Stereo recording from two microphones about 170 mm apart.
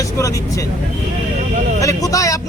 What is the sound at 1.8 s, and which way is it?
Speech, 20° left (ahead or behind).